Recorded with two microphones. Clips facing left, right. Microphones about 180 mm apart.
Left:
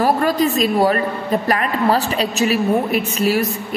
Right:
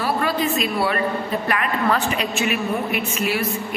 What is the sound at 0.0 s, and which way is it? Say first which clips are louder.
A woman's voice: left 6 dB; 40° left (ahead or behind).